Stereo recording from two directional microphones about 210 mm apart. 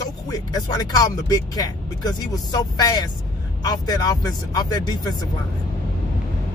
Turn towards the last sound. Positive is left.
turn(degrees=20)  # may be behind; listen again after turning